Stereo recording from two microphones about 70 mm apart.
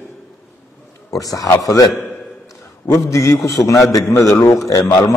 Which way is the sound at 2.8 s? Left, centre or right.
Left.